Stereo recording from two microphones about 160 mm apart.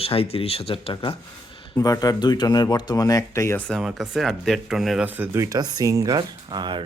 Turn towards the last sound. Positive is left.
turn(degrees=-30)  # may be behind; listen again after turning